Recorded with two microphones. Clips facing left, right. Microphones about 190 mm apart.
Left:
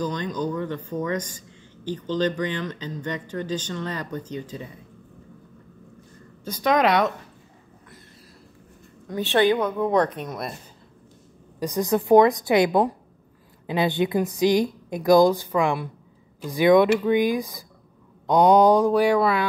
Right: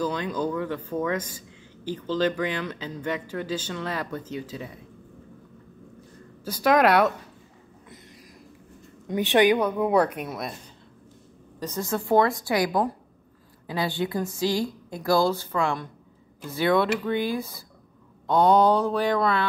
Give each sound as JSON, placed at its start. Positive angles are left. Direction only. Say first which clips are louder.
{"t": 0.0, "sound": "a woman's voice", "louder": "even", "side_deg": -5}
{"t": 6.4, "sound": "speech", "louder": "right 1 dB", "side_deg": -5}
{"t": 9.0, "sound": "a woman's voice", "louder": "even", "side_deg": -15}
{"t": 11.6, "sound": "a woman's voice", "louder": "left 6 dB", "side_deg": 15}